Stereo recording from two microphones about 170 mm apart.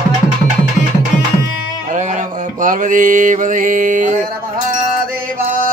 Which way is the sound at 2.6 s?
50° right (ahead or behind).